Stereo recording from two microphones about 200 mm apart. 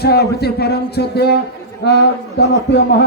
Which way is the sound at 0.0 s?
55° left (ahead or behind).